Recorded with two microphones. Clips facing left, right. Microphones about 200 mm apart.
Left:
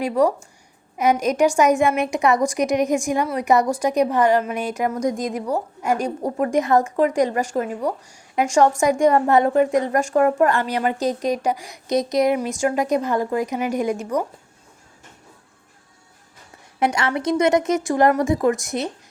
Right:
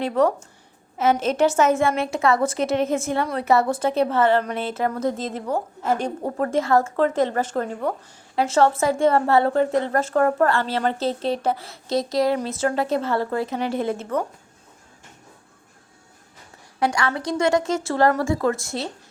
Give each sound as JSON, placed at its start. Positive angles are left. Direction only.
{"t": 0.0, "sound": "a woman's voice", "side_deg": 10}
{"t": 16.8, "sound": "speech", "side_deg": 20}